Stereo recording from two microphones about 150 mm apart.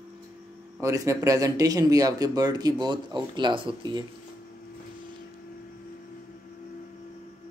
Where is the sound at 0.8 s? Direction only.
20° right (ahead or behind).